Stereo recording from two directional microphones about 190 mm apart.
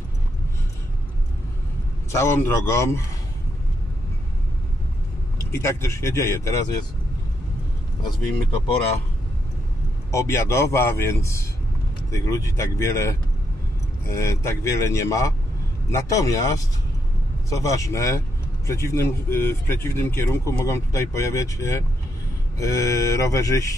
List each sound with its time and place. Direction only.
2.1 s a man's voice: 15° left (ahead or behind)
5.5 s a man's voice: 15° left (ahead or behind)
10.1 s a man's voice: 15° left (ahead or behind)